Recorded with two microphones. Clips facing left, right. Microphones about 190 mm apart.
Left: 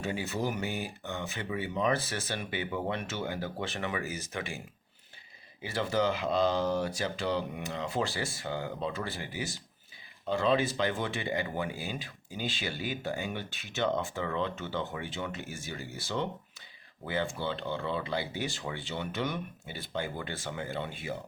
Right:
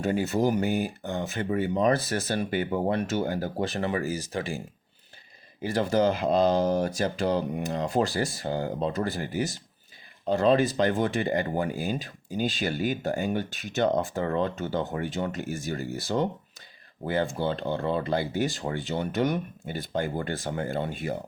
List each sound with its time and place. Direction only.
0.0 s speech: 45° right (ahead or behind)
5.7 s speech: 45° right (ahead or behind)